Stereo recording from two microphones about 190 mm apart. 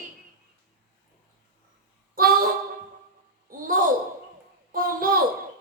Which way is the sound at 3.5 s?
45° right (ahead or behind).